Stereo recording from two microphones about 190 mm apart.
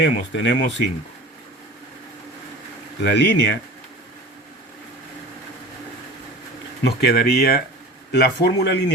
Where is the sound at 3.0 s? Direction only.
65° left (ahead or behind).